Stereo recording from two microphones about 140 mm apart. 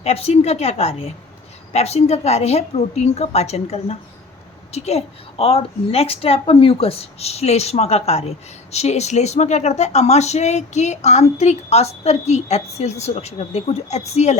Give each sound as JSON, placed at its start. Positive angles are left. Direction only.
{"t": 0.0, "sound": "speech", "side_deg": 45}